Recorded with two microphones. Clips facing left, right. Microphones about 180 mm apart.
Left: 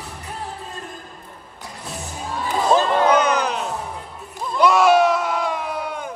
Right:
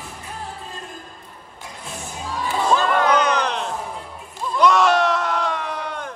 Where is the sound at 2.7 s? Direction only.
30° left (ahead or behind).